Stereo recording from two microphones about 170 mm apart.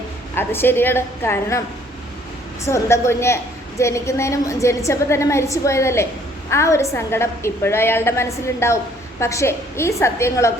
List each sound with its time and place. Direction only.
0.3 s a woman's voice: 15° left (ahead or behind)
2.6 s a woman's voice: 15° left (ahead or behind)